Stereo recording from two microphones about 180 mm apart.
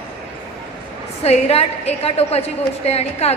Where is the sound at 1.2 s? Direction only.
35° left (ahead or behind).